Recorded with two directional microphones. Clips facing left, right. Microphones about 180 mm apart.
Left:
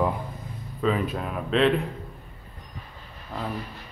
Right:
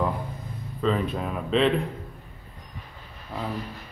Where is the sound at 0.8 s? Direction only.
5° left (ahead or behind).